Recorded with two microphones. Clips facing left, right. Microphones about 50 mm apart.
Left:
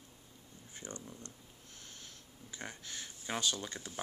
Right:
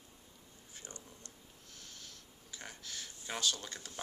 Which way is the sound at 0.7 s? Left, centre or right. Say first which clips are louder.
Left 6 dB; left.